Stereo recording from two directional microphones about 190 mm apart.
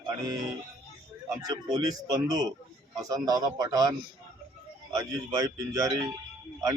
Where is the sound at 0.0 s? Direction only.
20° right (ahead or behind).